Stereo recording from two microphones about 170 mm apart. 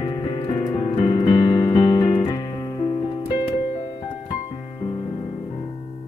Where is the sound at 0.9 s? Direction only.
40° left (ahead or behind).